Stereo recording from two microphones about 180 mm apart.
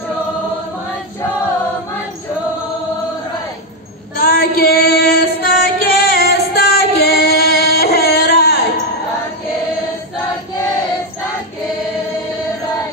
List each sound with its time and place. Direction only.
4.2 s female singing: 55° left (ahead or behind)